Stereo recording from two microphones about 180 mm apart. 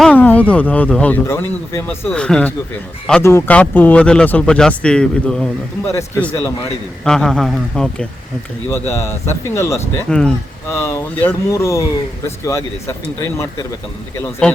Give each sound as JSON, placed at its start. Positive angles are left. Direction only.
{"t": 0.0, "sound": "speech", "side_deg": 10}
{"t": 8.7, "sound": "speech", "side_deg": 15}
{"t": 10.1, "sound": "speech", "side_deg": 5}
{"t": 14.4, "sound": "speech", "side_deg": 5}